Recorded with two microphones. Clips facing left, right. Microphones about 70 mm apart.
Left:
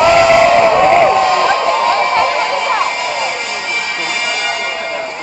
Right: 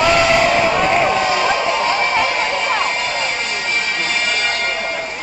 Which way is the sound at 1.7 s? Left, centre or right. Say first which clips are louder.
Left 5 dB; centre.